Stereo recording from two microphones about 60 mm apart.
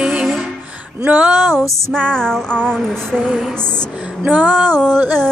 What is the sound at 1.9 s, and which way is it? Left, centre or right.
Music, centre.